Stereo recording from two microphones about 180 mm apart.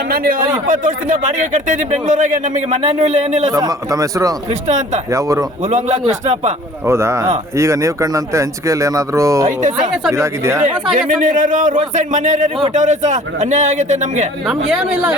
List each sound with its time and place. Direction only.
0.1 s speech: 50° right (ahead or behind)
3.5 s speech: 20° right (ahead or behind)
5.6 s a man's voice: 40° right (ahead or behind)
6.8 s speech: 15° right (ahead or behind)
9.5 s speech: 45° right (ahead or behind)
10.1 s speech: 15° right (ahead or behind)
10.9 s speech: 45° right (ahead or behind)